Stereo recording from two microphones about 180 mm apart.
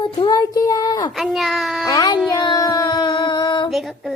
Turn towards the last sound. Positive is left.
turn(degrees=0)  # may be behind; listen again after turning